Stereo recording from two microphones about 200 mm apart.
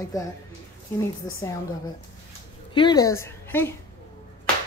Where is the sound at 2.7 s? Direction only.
25° left (ahead or behind).